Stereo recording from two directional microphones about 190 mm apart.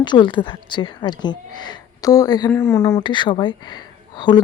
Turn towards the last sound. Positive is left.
turn(degrees=20)  # may be behind; listen again after turning